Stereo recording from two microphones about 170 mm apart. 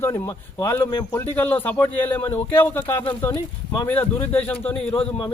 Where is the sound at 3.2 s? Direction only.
15° left (ahead or behind).